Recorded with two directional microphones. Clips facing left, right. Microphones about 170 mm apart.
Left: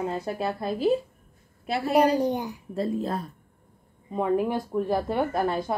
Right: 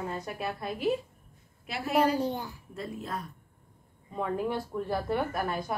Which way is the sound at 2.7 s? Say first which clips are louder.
Left 10 dB; 30° left (ahead or behind).